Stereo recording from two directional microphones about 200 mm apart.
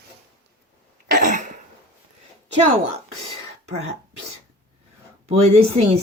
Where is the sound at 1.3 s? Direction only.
40° right (ahead or behind).